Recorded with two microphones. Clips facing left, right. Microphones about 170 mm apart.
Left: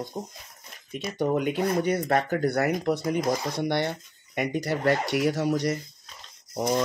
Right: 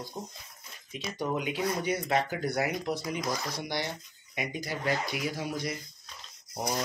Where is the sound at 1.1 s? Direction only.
55° left (ahead or behind).